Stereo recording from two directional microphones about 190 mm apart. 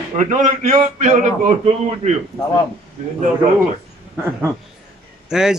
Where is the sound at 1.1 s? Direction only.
40° right (ahead or behind).